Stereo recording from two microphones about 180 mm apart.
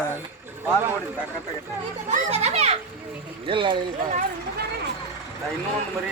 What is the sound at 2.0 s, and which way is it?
Children playing, 40° right (ahead or behind).